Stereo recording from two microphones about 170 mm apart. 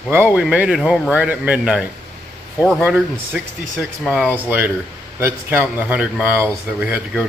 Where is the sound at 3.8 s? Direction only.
Centre (ahead or behind).